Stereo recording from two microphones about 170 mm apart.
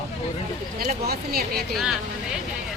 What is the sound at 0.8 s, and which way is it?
Speech, 65° right (ahead or behind).